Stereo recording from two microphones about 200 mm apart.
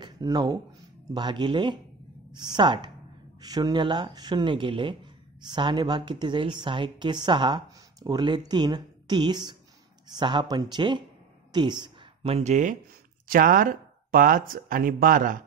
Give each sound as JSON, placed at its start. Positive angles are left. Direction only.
{"t": 0.0, "sound": "a woman's voice", "side_deg": -20}